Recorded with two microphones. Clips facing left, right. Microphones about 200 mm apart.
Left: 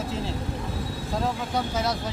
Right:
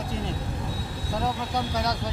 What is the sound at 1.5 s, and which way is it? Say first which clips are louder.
Speech: left 1 dB; centre (ahead or behind).